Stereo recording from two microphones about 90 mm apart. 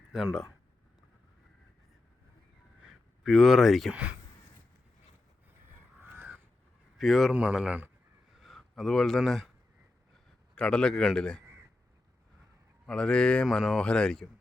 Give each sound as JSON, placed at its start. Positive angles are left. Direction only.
{"t": 0.1, "sound": "speech", "side_deg": -5}
{"t": 3.2, "sound": "speech", "side_deg": 0}
{"t": 7.0, "sound": "speech", "side_deg": 0}
{"t": 7.3, "sound": "speech", "side_deg": -10}
{"t": 8.4, "sound": "speech", "side_deg": 0}
{"t": 10.5, "sound": "speech", "side_deg": 10}
{"t": 12.8, "sound": "speech", "side_deg": 10}